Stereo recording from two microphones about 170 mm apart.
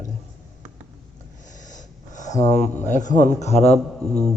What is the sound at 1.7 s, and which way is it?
Speech, 45° left (ahead or behind).